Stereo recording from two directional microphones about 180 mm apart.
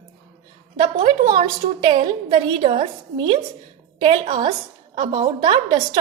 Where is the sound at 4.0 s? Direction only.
30° right (ahead or behind).